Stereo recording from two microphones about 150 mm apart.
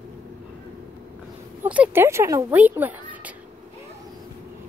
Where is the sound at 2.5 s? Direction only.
10° right (ahead or behind).